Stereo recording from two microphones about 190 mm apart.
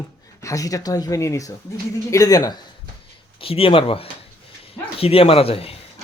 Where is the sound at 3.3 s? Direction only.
30° left (ahead or behind).